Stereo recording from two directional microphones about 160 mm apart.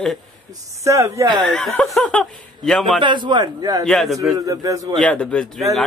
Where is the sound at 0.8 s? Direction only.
20° right (ahead or behind).